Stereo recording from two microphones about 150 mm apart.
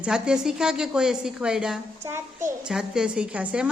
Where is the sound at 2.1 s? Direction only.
15° right (ahead or behind).